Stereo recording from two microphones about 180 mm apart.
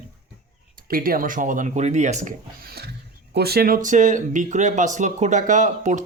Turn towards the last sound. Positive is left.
turn(degrees=-45)  # may be behind; listen again after turning